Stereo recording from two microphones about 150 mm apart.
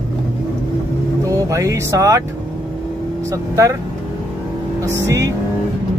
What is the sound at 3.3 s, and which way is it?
Speech, 20° right (ahead or behind).